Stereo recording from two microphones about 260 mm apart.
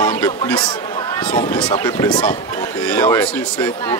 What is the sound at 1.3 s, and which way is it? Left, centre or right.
A man's voice, centre.